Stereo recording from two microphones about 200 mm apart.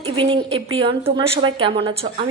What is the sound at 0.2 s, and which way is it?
A woman's voice, 25° right (ahead or behind).